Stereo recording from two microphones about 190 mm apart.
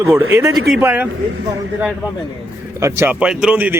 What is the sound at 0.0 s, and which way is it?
Speech, 10° right (ahead or behind).